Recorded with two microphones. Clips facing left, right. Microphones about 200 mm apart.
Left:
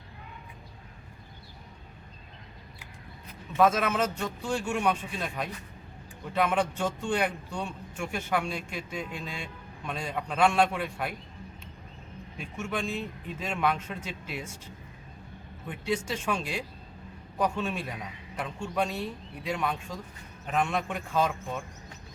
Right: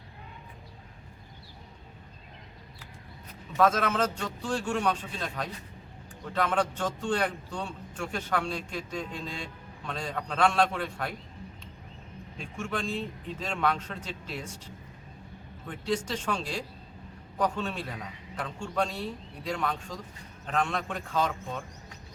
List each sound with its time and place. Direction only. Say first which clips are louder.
3.6 s a man's voice: left 1 dB; 10° left (ahead or behind)
12.4 s a man's voice: left 1 dB; 5° left (ahead or behind)
15.6 s a man's voice: even; 10° left (ahead or behind)